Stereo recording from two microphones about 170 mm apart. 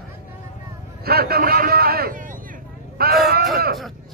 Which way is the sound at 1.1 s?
65° right (ahead or behind).